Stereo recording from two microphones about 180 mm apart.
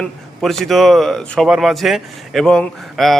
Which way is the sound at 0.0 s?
Centre (ahead or behind).